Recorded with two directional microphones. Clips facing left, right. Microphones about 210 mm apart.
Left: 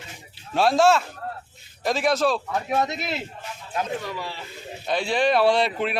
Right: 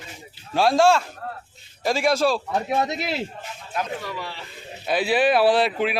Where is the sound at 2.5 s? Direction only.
35° right (ahead or behind).